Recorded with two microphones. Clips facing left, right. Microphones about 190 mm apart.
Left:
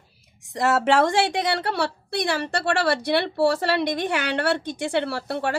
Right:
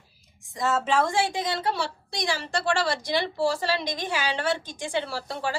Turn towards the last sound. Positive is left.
turn(degrees=65)  # may be behind; listen again after turning